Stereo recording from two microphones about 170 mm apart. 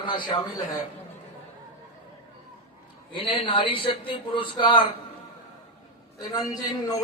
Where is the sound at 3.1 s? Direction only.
30° left (ahead or behind).